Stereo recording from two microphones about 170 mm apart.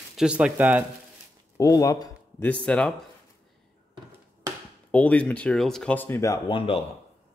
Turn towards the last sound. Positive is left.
turn(degrees=30)  # may be behind; listen again after turning